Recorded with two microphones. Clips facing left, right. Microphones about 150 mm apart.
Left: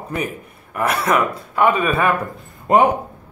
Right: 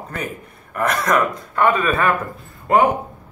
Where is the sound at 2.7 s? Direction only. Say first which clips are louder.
Left 1 dB; 20° left (ahead or behind).